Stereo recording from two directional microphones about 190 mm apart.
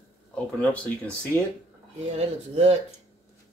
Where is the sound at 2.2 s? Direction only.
35° right (ahead or behind).